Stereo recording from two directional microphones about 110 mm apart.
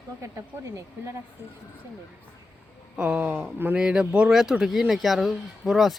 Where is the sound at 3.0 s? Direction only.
15° right (ahead or behind).